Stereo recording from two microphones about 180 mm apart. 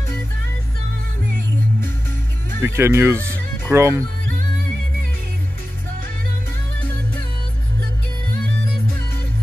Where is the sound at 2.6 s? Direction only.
15° right (ahead or behind).